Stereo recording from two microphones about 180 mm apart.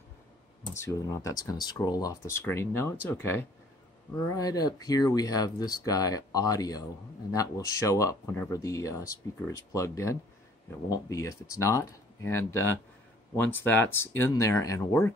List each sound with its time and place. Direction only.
0.7 s speech: 20° left (ahead or behind)